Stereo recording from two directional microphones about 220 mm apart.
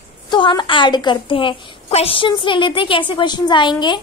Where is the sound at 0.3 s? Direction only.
20° left (ahead or behind).